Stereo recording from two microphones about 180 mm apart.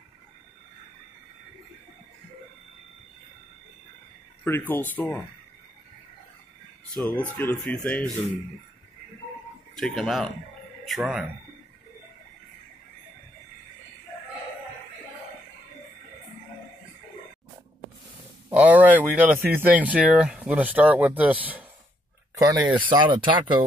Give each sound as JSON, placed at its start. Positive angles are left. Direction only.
{"t": 4.5, "sound": "speech", "side_deg": 10}
{"t": 6.9, "sound": "speech", "side_deg": 5}
{"t": 9.8, "sound": "speech", "side_deg": 0}
{"t": 18.5, "sound": "speech", "side_deg": -10}
{"t": 22.3, "sound": "speech", "side_deg": -20}